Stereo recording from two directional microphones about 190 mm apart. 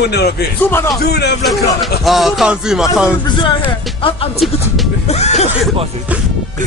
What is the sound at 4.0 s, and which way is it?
Speech, 30° left (ahead or behind).